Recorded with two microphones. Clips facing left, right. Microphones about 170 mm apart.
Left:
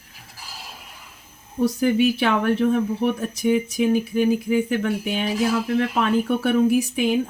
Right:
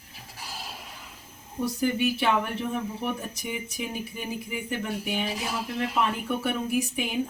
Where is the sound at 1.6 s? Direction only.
85° left.